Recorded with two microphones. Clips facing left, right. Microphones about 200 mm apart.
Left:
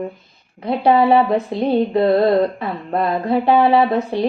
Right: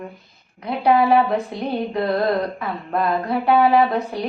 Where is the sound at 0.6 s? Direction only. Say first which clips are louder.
Left 3 dB; 25° left (ahead or behind).